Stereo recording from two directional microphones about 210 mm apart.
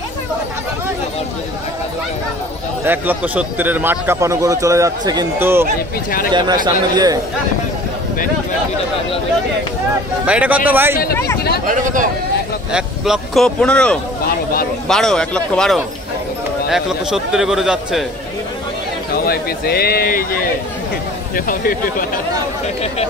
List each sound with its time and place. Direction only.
2.8 s speech: 10° right (ahead or behind)
10.2 s speech: 5° right (ahead or behind)
11.6 s speech: 40° right (ahead or behind)
12.7 s a man's voice: centre (ahead or behind)
14.2 s a sound: 45° left (ahead or behind)
14.9 s a man's voice: centre (ahead or behind)
19.1 s a man's voice: 45° left (ahead or behind)
21.5 s a man's voice: 40° left (ahead or behind)